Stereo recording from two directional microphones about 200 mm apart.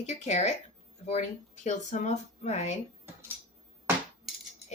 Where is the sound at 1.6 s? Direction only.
35° left (ahead or behind).